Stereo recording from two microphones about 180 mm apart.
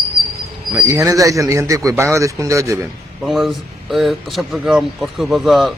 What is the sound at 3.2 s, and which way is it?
Speech, centre (ahead or behind).